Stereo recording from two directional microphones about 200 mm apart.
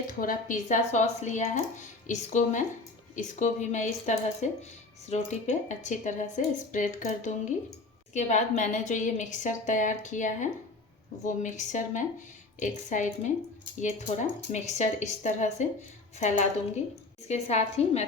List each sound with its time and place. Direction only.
0.1 s speech: 45° left (ahead or behind)